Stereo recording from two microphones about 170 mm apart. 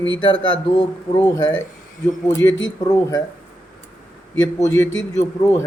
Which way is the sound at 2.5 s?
90° left.